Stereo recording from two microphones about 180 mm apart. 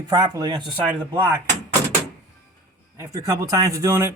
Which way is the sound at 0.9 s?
10° right (ahead or behind).